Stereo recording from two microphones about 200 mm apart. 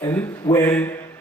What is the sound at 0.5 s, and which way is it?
Speech, 10° left (ahead or behind).